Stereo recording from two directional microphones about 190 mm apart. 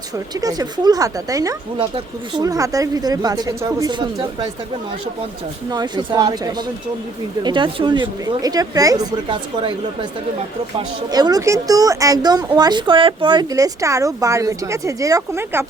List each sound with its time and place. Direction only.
0.3 s speech: 20° right (ahead or behind)
5.7 s speech: 20° right (ahead or behind)
11.1 s speech: 20° right (ahead or behind)